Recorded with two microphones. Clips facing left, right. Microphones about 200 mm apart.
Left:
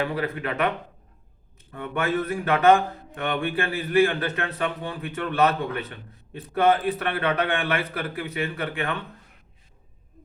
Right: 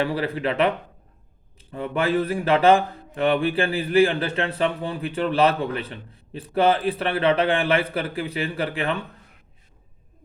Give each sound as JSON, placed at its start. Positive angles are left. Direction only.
{"t": 0.0, "sound": "speech", "side_deg": -30}